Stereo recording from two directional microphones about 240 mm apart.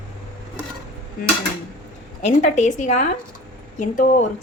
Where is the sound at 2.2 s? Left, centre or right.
Left.